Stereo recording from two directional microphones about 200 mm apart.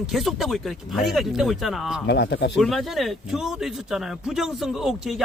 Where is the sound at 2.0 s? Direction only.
55° left (ahead or behind).